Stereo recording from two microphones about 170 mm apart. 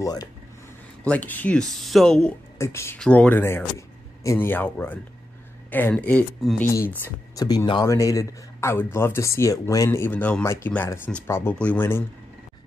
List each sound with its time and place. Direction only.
0.0 s speech: 20° left (ahead or behind)
1.0 s speech: 10° left (ahead or behind)
2.6 s a man's voice: 15° left (ahead or behind)
7.3 s a man's voice: 20° left (ahead or behind)